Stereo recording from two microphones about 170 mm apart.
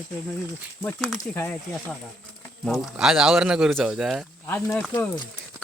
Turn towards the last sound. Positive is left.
turn(degrees=10)  # may be behind; listen again after turning